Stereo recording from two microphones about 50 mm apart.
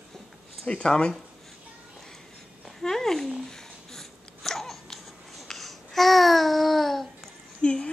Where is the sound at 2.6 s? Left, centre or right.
Centre.